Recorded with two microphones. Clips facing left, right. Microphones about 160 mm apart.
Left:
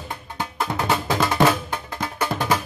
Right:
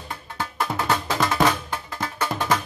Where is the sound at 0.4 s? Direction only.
5° left (ahead or behind).